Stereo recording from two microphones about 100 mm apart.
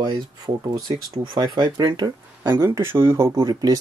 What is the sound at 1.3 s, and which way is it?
Speech, 45° right (ahead or behind).